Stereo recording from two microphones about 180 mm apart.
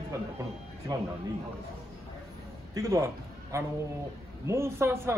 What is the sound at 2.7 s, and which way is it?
Speech, 15° right (ahead or behind).